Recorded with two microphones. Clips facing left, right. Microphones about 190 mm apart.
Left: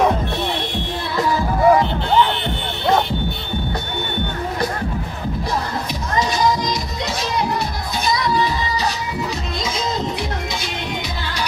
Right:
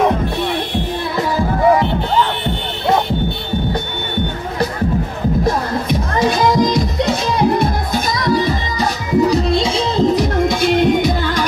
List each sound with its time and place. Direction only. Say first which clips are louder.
5.4 s music: right 3 dB; 55° right (ahead or behind)
9.5 s music: right 7 dB; 30° right (ahead or behind)
10.3 s music: right 12 dB; 50° right (ahead or behind)